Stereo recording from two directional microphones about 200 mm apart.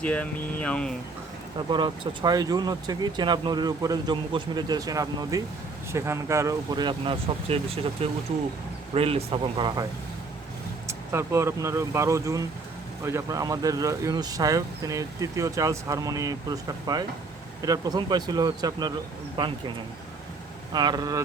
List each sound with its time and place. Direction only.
0.0 s speech: 5° left (ahead or behind)
1.7 s speech: 20° right (ahead or behind)
10.8 s speech: 15° right (ahead or behind)
20.7 s speech: 20° right (ahead or behind)